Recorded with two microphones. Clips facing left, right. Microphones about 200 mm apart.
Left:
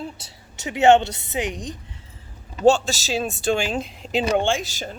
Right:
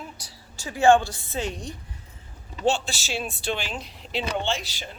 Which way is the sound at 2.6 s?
40° left (ahead or behind).